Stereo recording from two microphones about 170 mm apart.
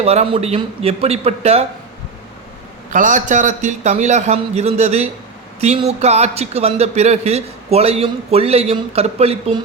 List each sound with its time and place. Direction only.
0.0 s a man's voice: 35° right (ahead or behind)
2.9 s a man's voice: 50° right (ahead or behind)